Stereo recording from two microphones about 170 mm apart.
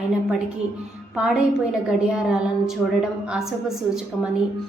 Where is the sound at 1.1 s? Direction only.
5° right (ahead or behind).